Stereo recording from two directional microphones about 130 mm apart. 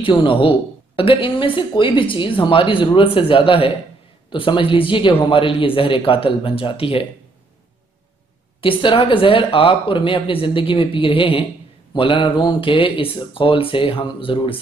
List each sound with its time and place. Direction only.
0.0 s speech: 40° left (ahead or behind)
8.5 s speech: 40° left (ahead or behind)